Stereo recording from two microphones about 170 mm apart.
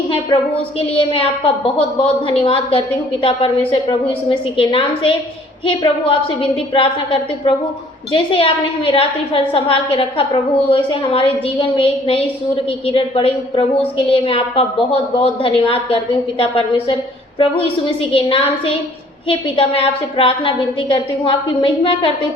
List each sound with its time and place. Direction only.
0.9 s a woman's voice: 30° left (ahead or behind)